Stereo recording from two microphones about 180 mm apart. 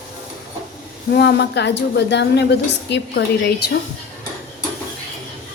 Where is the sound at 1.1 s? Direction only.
70° left (ahead or behind).